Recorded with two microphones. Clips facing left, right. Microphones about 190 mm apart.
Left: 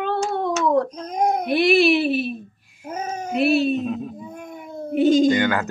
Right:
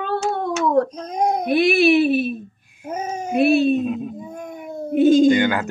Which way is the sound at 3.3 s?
50° right (ahead or behind).